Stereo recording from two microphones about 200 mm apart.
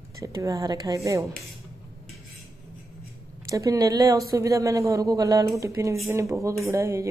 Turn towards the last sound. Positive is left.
turn(degrees=-15)  # may be behind; listen again after turning